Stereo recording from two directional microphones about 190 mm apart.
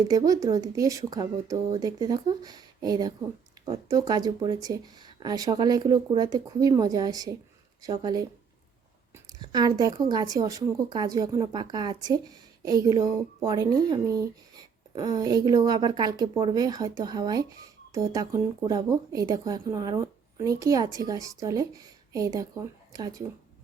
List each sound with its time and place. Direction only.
0.1 s speech: 20° right (ahead or behind)